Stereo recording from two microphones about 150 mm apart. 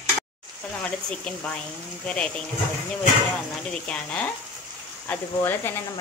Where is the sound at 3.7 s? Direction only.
10° left (ahead or behind).